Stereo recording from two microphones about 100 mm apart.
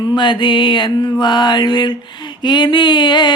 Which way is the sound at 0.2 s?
55° left (ahead or behind).